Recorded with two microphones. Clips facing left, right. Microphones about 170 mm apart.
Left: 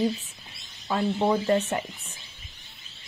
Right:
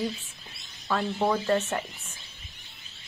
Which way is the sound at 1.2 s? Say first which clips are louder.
Left 2 dB; 15° left (ahead or behind).